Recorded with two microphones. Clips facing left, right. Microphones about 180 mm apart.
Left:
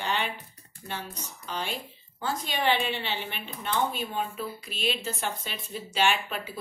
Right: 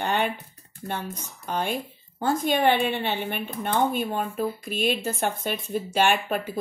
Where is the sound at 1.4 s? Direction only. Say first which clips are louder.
Right 7 dB; 50° right (ahead or behind).